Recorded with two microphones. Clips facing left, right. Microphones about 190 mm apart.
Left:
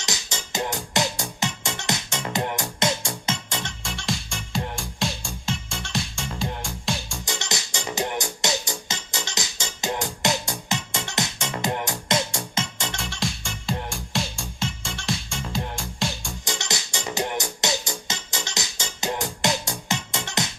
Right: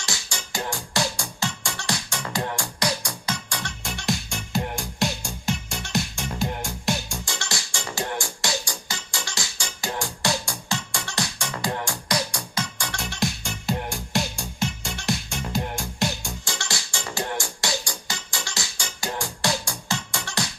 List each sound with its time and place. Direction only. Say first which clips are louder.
0.0 s music: left 2 dB; 20° left (ahead or behind)
3.8 s music: right 5 dB; centre (ahead or behind)
7.3 s music: left 2 dB; 20° left (ahead or behind)
13.0 s music: right 6 dB; centre (ahead or behind)
16.4 s music: left 2 dB; 20° left (ahead or behind)